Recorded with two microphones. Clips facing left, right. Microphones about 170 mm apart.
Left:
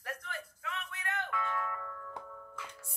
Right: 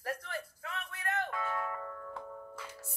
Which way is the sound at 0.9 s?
35° right (ahead or behind).